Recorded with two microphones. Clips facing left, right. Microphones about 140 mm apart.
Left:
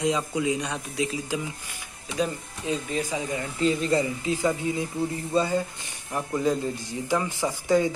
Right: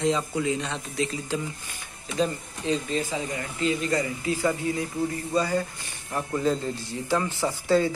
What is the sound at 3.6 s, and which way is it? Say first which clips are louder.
Speech: left 2 dB; 30° left (ahead or behind).